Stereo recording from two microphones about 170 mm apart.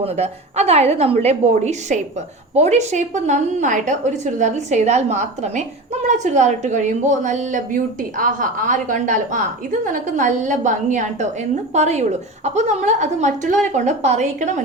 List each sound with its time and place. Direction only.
0.0 s a woman's voice: 40° right (ahead or behind)